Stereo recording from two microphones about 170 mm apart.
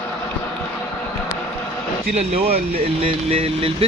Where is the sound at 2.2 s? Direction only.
35° right (ahead or behind).